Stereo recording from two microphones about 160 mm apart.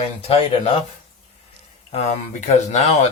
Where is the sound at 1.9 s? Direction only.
45° left (ahead or behind).